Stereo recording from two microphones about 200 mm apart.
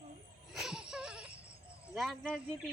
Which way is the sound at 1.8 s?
Centre (ahead or behind).